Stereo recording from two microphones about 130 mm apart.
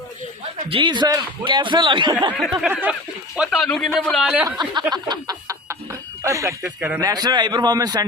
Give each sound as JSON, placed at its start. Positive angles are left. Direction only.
{"t": 0.7, "sound": "speech", "side_deg": -40}
{"t": 2.3, "sound": "snicker", "side_deg": -5}
{"t": 4.4, "sound": "speech", "side_deg": -35}
{"t": 5.0, "sound": "chicken", "side_deg": -30}
{"t": 6.6, "sound": "snicker", "side_deg": -5}
{"t": 7.0, "sound": "speech", "side_deg": -30}